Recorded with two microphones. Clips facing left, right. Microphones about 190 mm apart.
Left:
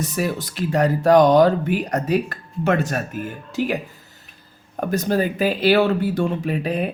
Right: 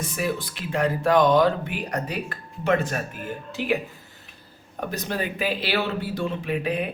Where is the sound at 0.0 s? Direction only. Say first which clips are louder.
Left 3 dB; 40° left (ahead or behind).